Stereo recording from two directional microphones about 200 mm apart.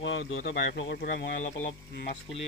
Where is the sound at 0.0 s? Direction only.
65° left (ahead or behind).